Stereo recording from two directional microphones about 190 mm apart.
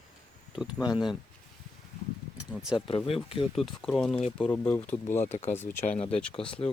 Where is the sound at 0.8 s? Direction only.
20° left (ahead or behind).